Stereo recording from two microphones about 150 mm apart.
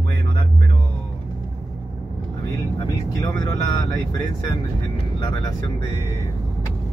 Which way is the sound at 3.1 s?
25° left (ahead or behind).